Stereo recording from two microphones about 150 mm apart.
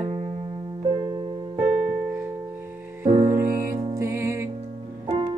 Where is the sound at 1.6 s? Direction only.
50° right (ahead or behind).